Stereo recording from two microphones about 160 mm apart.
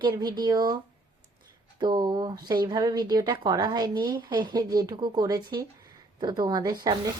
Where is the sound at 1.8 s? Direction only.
30° right (ahead or behind).